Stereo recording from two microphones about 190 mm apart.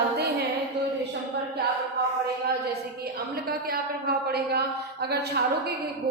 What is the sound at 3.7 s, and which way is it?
Speech, 55° right (ahead or behind).